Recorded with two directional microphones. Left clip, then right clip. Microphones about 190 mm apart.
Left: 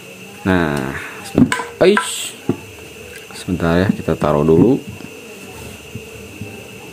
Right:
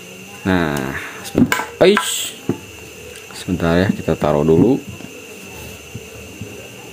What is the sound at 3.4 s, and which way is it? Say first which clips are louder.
Speech: even; centre (ahead or behind).